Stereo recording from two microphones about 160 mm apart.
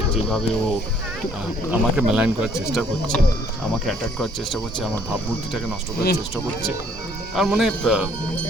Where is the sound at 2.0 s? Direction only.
5° right (ahead or behind).